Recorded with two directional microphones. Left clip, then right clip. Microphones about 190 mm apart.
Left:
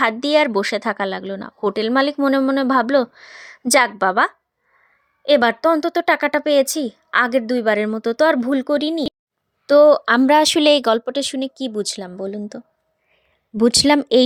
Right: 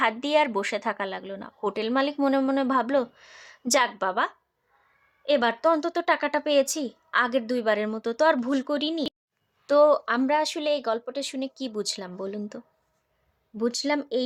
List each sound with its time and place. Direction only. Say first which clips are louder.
0.0 s speech: left 6 dB; 30° left (ahead or behind)
13.6 s speech: left 12 dB; 45° left (ahead or behind)